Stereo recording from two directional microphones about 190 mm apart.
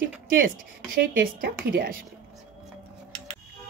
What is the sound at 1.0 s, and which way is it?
Speech, 50° right (ahead or behind).